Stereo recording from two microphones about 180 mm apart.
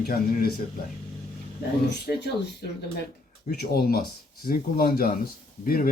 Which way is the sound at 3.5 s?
60° left (ahead or behind).